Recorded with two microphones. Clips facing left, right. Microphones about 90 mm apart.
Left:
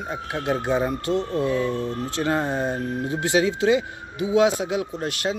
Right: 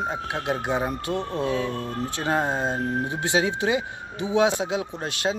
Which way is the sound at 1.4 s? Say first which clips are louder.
Even; 70° right (ahead or behind).